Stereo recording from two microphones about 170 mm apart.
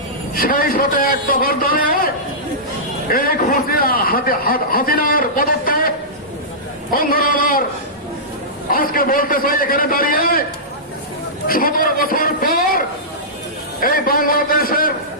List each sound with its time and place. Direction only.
0.3 s a man's voice: 55° left (ahead or behind)
3.1 s a man's voice: 60° left (ahead or behind)
6.9 s a man's voice: 60° left (ahead or behind)
8.7 s a man's voice: 55° left (ahead or behind)
11.4 s a man's voice: 60° left (ahead or behind)
13.8 s a man's voice: 55° left (ahead or behind)